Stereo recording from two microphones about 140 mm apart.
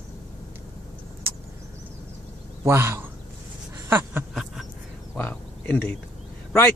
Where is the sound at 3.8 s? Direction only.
15° right (ahead or behind).